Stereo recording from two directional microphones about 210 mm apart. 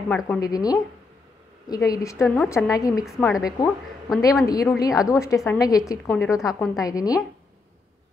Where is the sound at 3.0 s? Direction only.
Centre (ahead or behind).